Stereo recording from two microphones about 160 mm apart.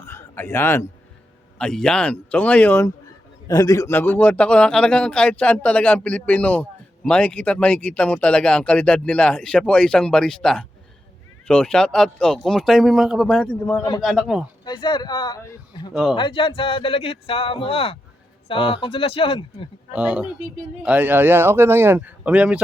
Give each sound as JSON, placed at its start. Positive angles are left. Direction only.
{"t": 0.0, "sound": "a sound", "side_deg": 15}
{"t": 1.5, "sound": "a man's voice", "side_deg": 5}
{"t": 14.6, "sound": "speech", "side_deg": 25}
{"t": 15.9, "sound": "speech", "side_deg": -5}
{"t": 16.1, "sound": "speech", "side_deg": 30}
{"t": 19.9, "sound": "speech", "side_deg": -5}